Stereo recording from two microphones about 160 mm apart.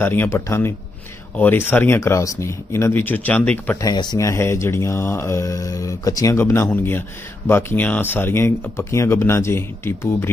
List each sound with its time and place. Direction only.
0.0 s speech: 15° left (ahead or behind)
3.7 s speech: 25° left (ahead or behind)